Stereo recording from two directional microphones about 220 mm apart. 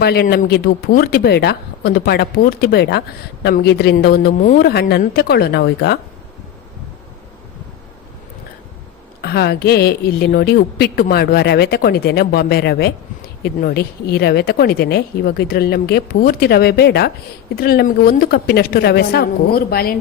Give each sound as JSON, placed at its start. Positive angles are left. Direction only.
{"t": 0.0, "sound": "a woman's voice", "side_deg": 45}
{"t": 9.2, "sound": "a woman's voice", "side_deg": 45}